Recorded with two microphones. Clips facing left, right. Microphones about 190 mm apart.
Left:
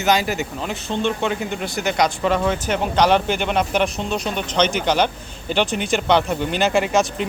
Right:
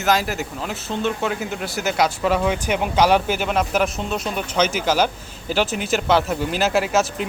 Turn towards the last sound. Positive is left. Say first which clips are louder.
# left 1 dB
turn(degrees=-5)  # may be behind; listen again after turning